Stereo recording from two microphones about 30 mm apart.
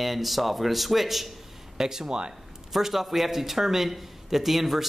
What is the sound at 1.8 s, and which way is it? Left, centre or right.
A man's voice, centre.